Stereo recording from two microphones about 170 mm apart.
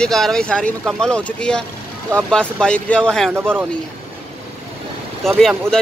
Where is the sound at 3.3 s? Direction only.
10° right (ahead or behind).